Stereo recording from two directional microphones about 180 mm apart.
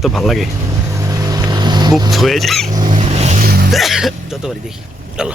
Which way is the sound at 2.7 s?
25° right (ahead or behind).